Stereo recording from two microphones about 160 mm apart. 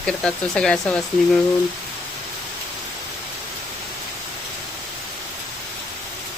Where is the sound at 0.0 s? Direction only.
5° left (ahead or behind).